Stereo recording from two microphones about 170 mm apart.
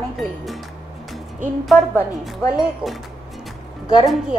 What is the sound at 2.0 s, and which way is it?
Speech, 5° right (ahead or behind).